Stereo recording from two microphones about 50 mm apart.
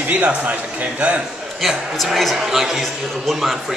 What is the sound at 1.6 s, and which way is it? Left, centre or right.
A man's voice, centre.